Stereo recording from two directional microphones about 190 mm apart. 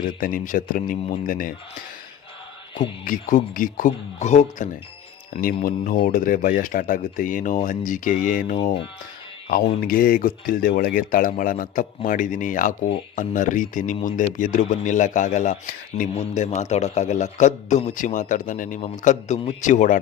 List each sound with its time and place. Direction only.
0.2 s speech: 45° left (ahead or behind)
3.0 s speech: 45° left (ahead or behind)
5.3 s speech: 50° left (ahead or behind)
9.8 s a man's voice: 50° left (ahead or behind)